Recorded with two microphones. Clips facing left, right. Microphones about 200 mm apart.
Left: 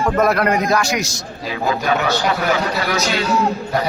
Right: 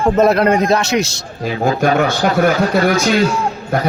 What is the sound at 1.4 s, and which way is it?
A man's voice, 50° right (ahead or behind).